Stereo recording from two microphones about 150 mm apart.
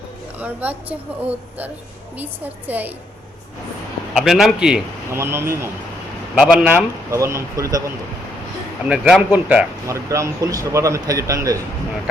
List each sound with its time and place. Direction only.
0.3 s a woman's voice: 10° right (ahead or behind)
2.1 s a woman's voice: 10° right (ahead or behind)
4.1 s a man's voice: centre (ahead or behind)
5.1 s a woman's voice: 15° right (ahead or behind)
6.4 s a man's voice: 5° right (ahead or behind)
7.1 s speech: 20° right (ahead or behind)
8.8 s speech: 5° right (ahead or behind)